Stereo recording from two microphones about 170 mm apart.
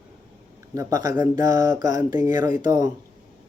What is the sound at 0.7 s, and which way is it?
Mantra, 20° right (ahead or behind).